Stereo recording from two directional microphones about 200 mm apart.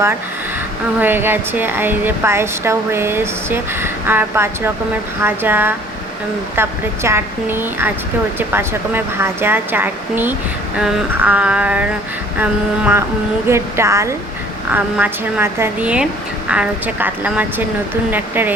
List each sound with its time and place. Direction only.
0.9 s speech: 10° right (ahead or behind)